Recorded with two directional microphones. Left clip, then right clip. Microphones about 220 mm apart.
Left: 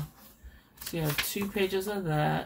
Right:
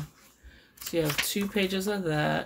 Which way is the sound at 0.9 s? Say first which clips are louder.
Right 4 dB; 50° right (ahead or behind).